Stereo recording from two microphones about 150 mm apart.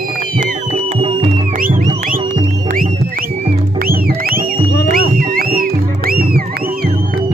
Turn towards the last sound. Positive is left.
turn(degrees=-80)